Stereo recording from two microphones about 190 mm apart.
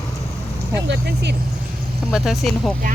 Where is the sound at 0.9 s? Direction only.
60° right (ahead or behind).